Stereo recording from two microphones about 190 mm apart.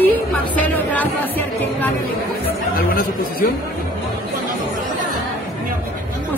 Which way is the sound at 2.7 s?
50° left (ahead or behind).